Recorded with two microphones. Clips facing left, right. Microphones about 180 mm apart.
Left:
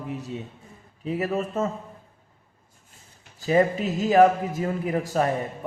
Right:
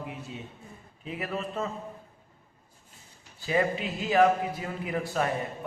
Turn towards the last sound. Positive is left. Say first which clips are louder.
# left 5 dB
turn(degrees=40)  # may be behind; listen again after turning